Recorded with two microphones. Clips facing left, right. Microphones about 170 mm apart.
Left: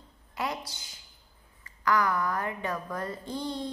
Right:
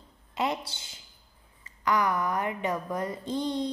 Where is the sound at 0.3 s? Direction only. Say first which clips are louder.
Right 4 dB; 25° right (ahead or behind).